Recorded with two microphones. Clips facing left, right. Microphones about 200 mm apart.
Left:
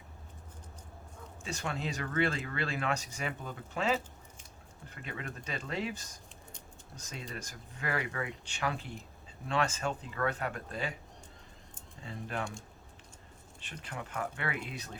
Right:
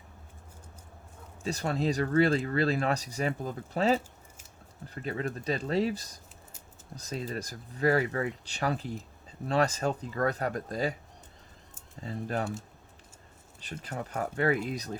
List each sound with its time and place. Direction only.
1.5 s speech: 35° right (ahead or behind)
5.0 s speech: 35° right (ahead or behind)
12.0 s speech: 40° right (ahead or behind)
13.8 s speech: 40° right (ahead or behind)